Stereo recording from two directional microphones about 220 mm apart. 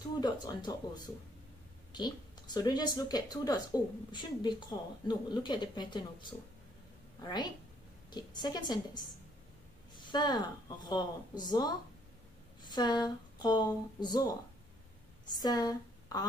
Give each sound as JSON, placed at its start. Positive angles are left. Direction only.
{"t": 0.2, "sound": "a woman's voice", "side_deg": 20}
{"t": 15.4, "sound": "a woman's voice", "side_deg": 20}